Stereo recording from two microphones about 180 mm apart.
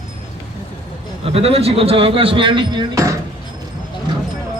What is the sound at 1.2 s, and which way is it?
Speech, 35° right (ahead or behind).